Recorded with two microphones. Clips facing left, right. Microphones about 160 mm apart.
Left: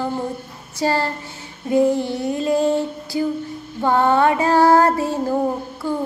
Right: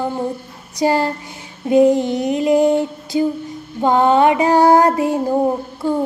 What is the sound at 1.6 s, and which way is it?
Female singing, 20° right (ahead or behind).